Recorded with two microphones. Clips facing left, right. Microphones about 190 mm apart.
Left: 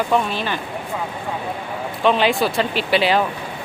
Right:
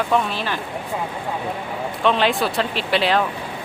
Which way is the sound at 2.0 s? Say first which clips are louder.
Left 2 dB; centre (ahead or behind).